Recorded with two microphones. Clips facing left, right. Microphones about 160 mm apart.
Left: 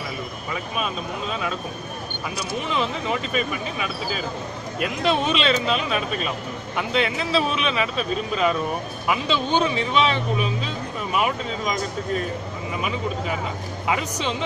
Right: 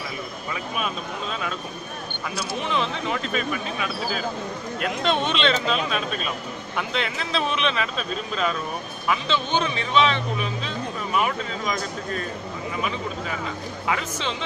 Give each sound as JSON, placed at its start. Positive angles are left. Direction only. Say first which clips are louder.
{"t": 2.7, "sound": "speech", "louder": "left 1 dB", "side_deg": 5}
{"t": 11.2, "sound": "speech", "louder": "left 2 dB", "side_deg": 15}
{"t": 13.8, "sound": "speech", "louder": "left 2 dB", "side_deg": 15}